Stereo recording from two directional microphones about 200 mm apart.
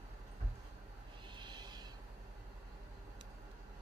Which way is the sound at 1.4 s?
20° right (ahead or behind).